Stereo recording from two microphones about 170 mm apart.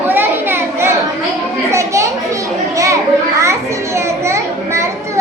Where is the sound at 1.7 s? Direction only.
15° right (ahead or behind).